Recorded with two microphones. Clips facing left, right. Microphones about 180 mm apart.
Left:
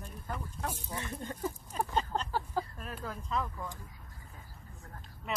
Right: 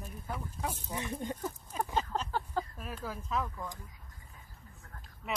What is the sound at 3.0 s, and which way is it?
Speech, 5° right (ahead or behind).